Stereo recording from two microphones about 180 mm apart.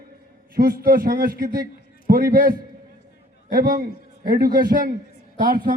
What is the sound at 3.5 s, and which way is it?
A man's voice, 55° right (ahead or behind).